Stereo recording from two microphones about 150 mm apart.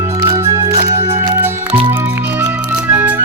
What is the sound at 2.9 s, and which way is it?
Music, 10° right (ahead or behind).